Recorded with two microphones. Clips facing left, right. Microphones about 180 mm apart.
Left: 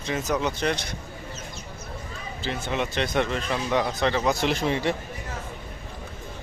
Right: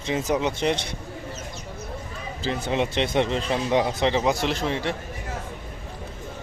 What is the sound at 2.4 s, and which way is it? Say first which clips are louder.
Speech: right 3 dB; 35° right (ahead or behind).